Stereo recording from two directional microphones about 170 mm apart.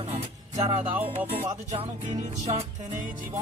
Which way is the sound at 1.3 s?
35° right (ahead or behind).